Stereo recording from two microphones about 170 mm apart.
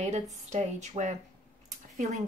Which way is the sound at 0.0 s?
45° right (ahead or behind).